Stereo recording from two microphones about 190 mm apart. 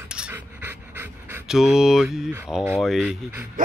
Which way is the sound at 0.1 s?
5° right (ahead or behind).